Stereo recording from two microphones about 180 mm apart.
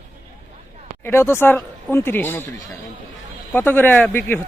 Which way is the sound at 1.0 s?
15° left (ahead or behind).